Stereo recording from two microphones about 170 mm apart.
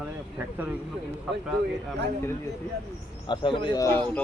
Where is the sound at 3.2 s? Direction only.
30° left (ahead or behind).